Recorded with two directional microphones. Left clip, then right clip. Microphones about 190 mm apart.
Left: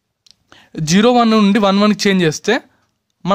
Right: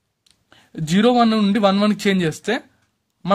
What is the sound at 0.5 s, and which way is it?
Speech, 35° left (ahead or behind).